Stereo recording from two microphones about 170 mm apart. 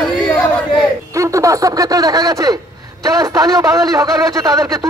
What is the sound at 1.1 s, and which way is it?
A man's voice, 20° right (ahead or behind).